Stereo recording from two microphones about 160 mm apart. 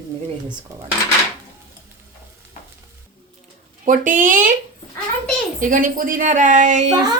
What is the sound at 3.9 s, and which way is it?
Speech, 55° right (ahead or behind).